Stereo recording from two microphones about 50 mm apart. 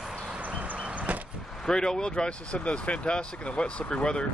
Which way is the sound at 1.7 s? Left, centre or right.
Centre.